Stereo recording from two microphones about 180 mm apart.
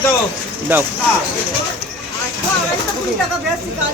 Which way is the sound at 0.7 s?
10° right (ahead or behind).